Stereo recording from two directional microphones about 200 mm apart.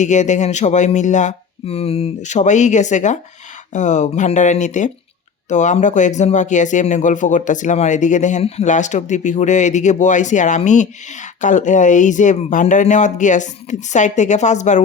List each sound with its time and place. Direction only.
0.0 s speech: 35° left (ahead or behind)